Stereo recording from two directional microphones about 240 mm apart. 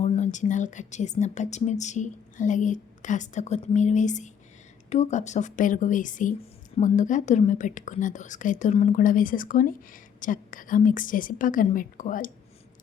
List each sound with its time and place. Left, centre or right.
0.0 s speech: left